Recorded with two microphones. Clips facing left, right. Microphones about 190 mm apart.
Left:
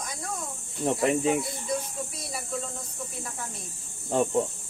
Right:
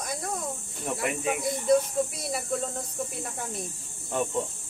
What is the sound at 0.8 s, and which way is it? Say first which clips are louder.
Speech: left 5 dB; 30° left (ahead or behind).